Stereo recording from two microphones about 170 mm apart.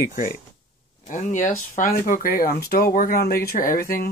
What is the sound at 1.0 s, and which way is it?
Speech, 45° left (ahead or behind).